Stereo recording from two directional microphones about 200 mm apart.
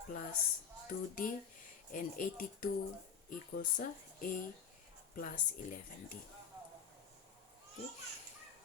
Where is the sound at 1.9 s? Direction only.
40° left (ahead or behind).